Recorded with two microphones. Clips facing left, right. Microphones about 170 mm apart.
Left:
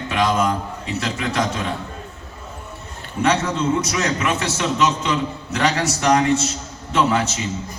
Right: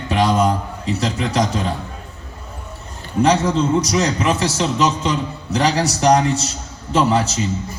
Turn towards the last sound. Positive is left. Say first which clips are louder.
# right 2 dB
turn(degrees=-35)  # may be behind; listen again after turning